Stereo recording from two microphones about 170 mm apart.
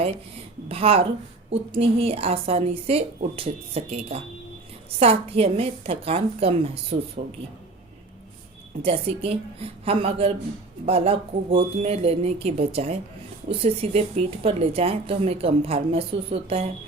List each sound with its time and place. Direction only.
0.7 s speech: 35° right (ahead or behind)
8.8 s speech: 35° right (ahead or behind)